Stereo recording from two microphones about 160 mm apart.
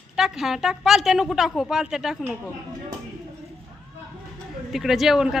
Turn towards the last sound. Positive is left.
turn(degrees=0)  # may be behind; listen again after turning